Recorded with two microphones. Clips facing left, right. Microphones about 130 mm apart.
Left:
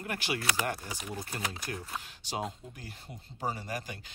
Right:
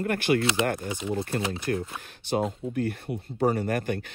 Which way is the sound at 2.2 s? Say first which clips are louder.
Right 11 dB; 55° right (ahead or behind).